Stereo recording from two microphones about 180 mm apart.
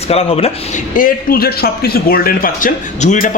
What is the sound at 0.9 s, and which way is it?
Speech, 50° left (ahead or behind).